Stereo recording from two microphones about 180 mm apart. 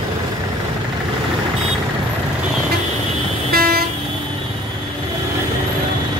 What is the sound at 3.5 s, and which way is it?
Train, 60° right (ahead or behind).